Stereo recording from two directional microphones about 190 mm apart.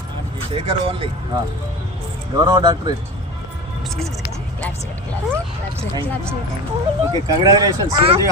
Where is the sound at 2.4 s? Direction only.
25° right (ahead or behind).